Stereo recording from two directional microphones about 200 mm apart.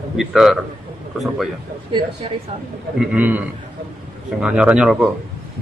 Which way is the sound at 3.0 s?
5° right (ahead or behind).